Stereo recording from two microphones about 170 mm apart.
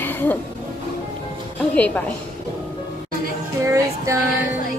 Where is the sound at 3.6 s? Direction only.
15° right (ahead or behind).